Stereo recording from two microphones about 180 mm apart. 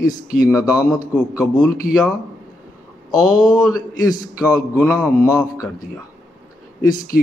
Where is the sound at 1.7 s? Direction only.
55° left (ahead or behind).